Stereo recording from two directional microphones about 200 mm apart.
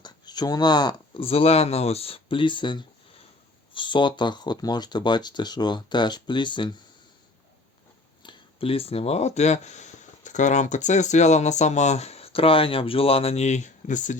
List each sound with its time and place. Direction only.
0.0 s speech: 20° left (ahead or behind)
8.2 s speech: 25° left (ahead or behind)